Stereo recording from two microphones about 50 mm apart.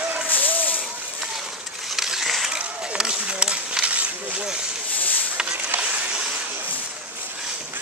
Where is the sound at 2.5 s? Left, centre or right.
Centre.